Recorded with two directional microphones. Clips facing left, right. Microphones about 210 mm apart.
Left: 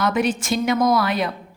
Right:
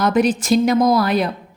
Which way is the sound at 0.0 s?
35° right (ahead or behind).